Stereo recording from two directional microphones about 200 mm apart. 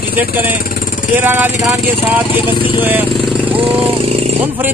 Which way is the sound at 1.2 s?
10° right (ahead or behind).